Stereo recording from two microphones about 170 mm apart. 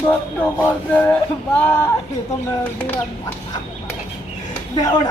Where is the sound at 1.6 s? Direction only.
10° left (ahead or behind).